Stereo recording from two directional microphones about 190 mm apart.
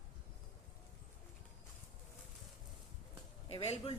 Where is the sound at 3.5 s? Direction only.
35° left (ahead or behind).